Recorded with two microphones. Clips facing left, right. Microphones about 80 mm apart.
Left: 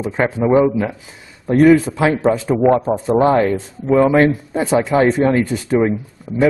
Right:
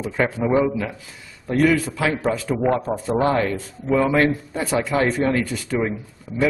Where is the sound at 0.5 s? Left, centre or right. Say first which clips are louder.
Left 9 dB; left.